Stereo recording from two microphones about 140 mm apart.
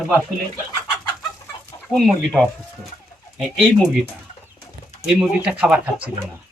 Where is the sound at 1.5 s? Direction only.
35° left (ahead or behind).